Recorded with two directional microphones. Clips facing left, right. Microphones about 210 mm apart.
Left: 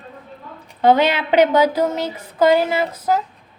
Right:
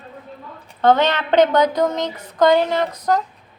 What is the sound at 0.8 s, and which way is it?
A woman's voice, 10° left (ahead or behind).